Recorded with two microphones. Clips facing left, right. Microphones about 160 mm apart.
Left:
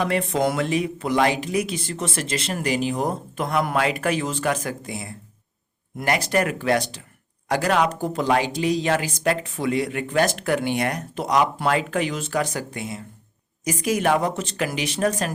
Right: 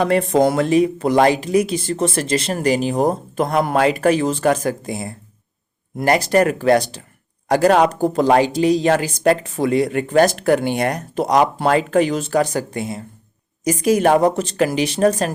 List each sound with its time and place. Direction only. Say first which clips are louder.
0.0 s speech: right 7 dB; 40° right (ahead or behind)